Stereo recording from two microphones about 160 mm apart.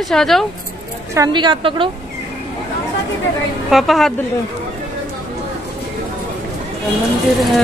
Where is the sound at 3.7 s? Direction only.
Centre (ahead or behind).